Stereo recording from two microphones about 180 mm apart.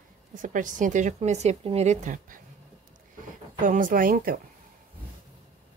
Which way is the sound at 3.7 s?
50° right (ahead or behind).